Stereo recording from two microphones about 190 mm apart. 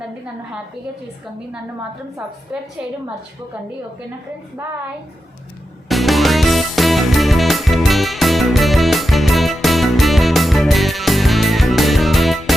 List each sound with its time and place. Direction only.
5.9 s music: centre (ahead or behind)